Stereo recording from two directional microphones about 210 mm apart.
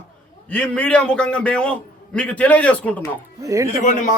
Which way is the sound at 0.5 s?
5° left (ahead or behind).